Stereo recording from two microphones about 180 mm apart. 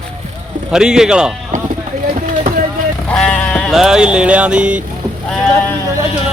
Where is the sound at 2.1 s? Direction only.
45° right (ahead or behind).